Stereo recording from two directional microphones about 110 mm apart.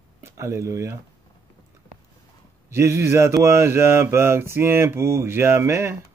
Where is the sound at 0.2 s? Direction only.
25° right (ahead or behind).